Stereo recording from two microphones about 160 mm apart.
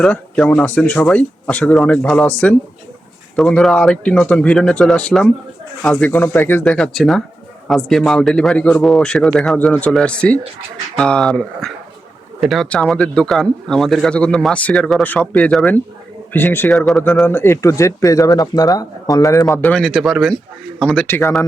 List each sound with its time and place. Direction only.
0.0 s speech: 10° left (ahead or behind)
3.3 s speech: 5° left (ahead or behind)
17.2 s speech: 15° left (ahead or behind)
19.5 s speech: 5° left (ahead or behind)